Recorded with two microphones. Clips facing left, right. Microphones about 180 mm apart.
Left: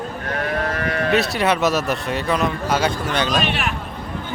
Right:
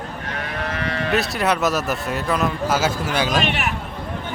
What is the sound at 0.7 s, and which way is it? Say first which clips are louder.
Livestock: left 3 dB; 50° left (ahead or behind).